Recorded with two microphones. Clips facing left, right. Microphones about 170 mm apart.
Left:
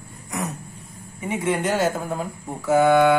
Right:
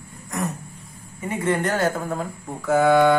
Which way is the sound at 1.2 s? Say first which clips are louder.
Right 1 dB; 10° left (ahead or behind).